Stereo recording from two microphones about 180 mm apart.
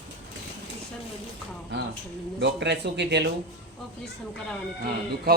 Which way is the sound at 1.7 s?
75° right (ahead or behind).